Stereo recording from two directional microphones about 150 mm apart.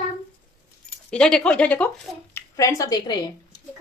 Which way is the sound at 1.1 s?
5° left (ahead or behind).